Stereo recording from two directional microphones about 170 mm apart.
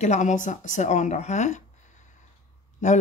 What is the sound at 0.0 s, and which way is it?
Speech, 45° left (ahead or behind).